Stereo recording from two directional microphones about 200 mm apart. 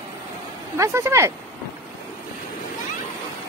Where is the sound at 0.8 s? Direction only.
15° right (ahead or behind).